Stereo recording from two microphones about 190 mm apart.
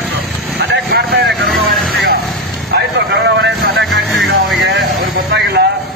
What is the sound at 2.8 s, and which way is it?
Vehicle, 50° right (ahead or behind).